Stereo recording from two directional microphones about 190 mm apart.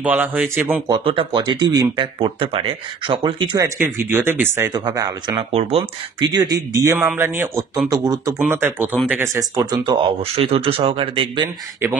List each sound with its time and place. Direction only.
0.0 s speech: 10° right (ahead or behind)
0.8 s speech: 25° right (ahead or behind)
5.5 s speech: 30° right (ahead or behind)
6.3 s speech: 20° right (ahead or behind)